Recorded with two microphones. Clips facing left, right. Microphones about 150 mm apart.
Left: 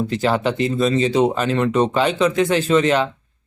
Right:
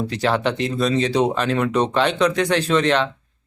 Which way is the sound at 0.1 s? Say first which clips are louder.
Left 1 dB; centre (ahead or behind).